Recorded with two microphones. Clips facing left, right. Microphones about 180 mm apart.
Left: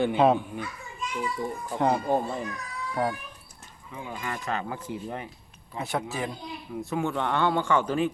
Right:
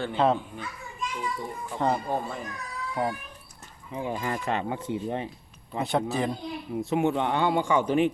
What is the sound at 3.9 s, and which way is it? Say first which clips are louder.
Speech: right 5 dB; 35° right (ahead or behind).